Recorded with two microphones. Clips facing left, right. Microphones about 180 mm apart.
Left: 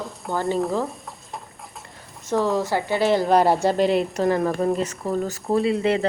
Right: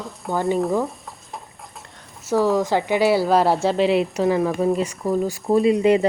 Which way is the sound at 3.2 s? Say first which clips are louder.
Even; centre (ahead or behind).